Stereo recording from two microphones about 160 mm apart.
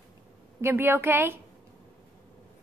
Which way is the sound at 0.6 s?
15° right (ahead or behind).